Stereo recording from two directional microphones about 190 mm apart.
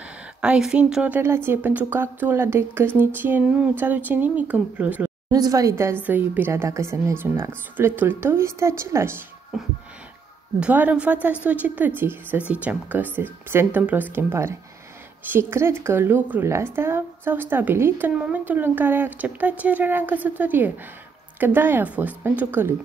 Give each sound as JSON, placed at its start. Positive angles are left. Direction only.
{"t": 0.4, "sound": "a woman's voice", "side_deg": -5}
{"t": 5.3, "sound": "a woman's voice", "side_deg": -20}
{"t": 9.5, "sound": "a sound", "side_deg": 0}
{"t": 10.6, "sound": "a woman's voice", "side_deg": -10}